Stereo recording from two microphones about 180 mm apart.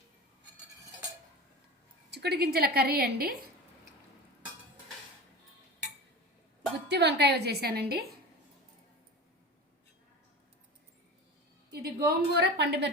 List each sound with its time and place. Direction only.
2.0 s a woman's voice: 65° right (ahead or behind)
6.8 s a woman's voice: 70° right (ahead or behind)
11.7 s a woman's voice: 60° right (ahead or behind)